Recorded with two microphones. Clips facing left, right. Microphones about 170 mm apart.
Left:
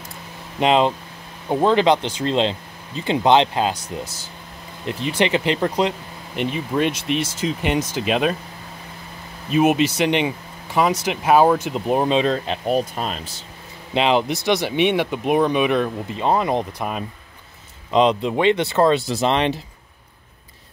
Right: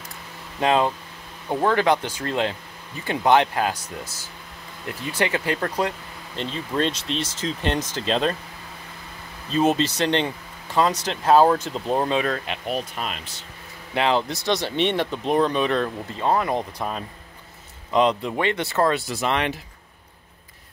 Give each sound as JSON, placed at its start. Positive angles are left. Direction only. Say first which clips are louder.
{"t": 0.6, "sound": "speech", "louder": "left 3 dB", "side_deg": 20}
{"t": 9.5, "sound": "speech", "louder": "left 3 dB", "side_deg": 15}
{"t": 12.6, "sound": "speech", "louder": "left 7 dB", "side_deg": 40}
{"t": 13.9, "sound": "speech", "louder": "left 3 dB", "side_deg": 20}